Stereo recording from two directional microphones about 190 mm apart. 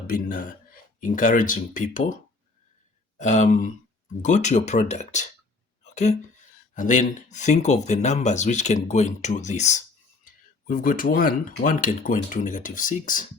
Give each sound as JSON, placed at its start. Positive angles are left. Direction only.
{"t": 0.1, "sound": "speech", "side_deg": 45}
{"t": 3.2, "sound": "speech", "side_deg": 40}
{"t": 5.8, "sound": "a sound", "side_deg": 40}
{"t": 6.7, "sound": "speech", "side_deg": 40}